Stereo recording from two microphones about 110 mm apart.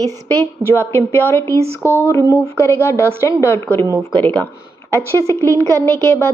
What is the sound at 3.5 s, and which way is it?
Speech, 20° left (ahead or behind).